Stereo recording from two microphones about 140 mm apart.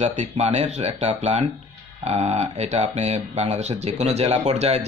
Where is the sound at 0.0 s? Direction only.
55° right (ahead or behind).